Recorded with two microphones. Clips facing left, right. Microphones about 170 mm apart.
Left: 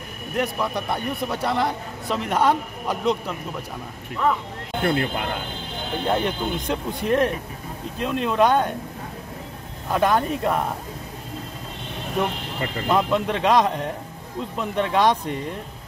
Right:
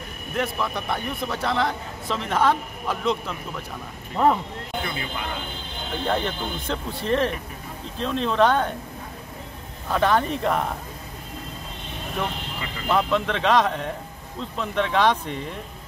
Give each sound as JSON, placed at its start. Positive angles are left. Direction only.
{"t": 0.4, "sound": "a man's voice", "side_deg": 15}
{"t": 4.8, "sound": "speech", "side_deg": 65}
{"t": 6.0, "sound": "a man's voice", "side_deg": 10}
{"t": 9.8, "sound": "speech", "side_deg": 10}
{"t": 12.5, "sound": "speech", "side_deg": 50}
{"t": 12.8, "sound": "a man's voice", "side_deg": 10}